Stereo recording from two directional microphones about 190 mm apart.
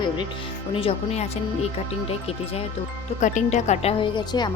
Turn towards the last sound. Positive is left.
turn(degrees=20)  # may be behind; listen again after turning